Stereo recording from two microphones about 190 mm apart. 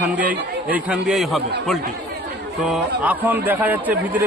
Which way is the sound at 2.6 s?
5° right (ahead or behind).